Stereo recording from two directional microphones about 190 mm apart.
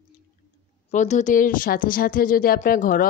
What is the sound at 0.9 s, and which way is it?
A woman's voice, 40° left (ahead or behind).